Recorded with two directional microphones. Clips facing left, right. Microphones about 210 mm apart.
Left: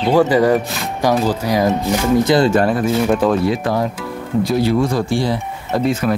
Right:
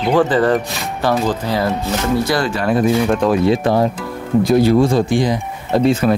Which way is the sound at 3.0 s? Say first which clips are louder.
Left 1 dB; 5° left (ahead or behind).